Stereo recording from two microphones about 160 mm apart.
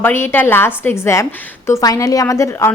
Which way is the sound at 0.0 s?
15° left (ahead or behind).